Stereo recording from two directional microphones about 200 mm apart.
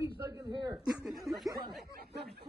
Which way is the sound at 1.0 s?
Centre (ahead or behind).